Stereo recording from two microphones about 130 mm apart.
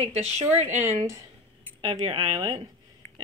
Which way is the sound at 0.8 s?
25° right (ahead or behind).